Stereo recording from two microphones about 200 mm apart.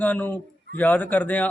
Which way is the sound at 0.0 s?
10° left (ahead or behind).